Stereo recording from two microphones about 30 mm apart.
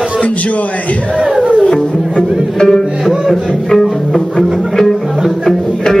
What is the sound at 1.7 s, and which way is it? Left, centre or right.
Music, left.